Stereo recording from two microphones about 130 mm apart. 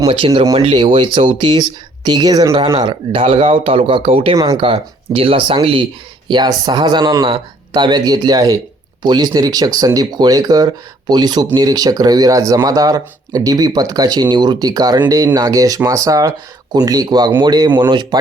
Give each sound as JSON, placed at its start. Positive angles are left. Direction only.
{"t": 0.7, "sound": "speech", "side_deg": -40}
{"t": 2.7, "sound": "a man's voice", "side_deg": -40}